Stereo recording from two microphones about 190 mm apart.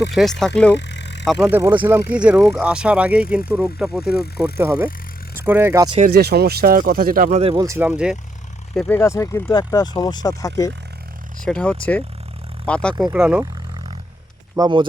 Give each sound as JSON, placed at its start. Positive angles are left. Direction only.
{"t": 0.1, "sound": "speech", "side_deg": 0}
{"t": 0.7, "sound": "vehicle", "side_deg": 65}
{"t": 1.2, "sound": "speech", "side_deg": 0}
{"t": 1.5, "sound": "speech", "side_deg": -10}
{"t": 6.1, "sound": "speech", "side_deg": -55}
{"t": 7.6, "sound": "speech", "side_deg": -15}
{"t": 9.0, "sound": "speech", "side_deg": 15}
{"t": 11.4, "sound": "speech", "side_deg": 5}
{"t": 13.1, "sound": "speech", "side_deg": -5}
{"t": 14.5, "sound": "speech", "side_deg": -20}